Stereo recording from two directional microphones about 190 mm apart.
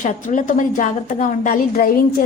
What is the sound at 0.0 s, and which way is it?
A woman's voice, 40° left (ahead or behind).